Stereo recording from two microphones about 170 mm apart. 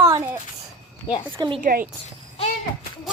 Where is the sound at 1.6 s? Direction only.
60° right (ahead or behind).